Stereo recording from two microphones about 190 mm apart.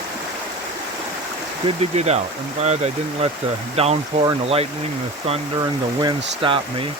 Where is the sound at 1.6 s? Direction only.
35° right (ahead or behind).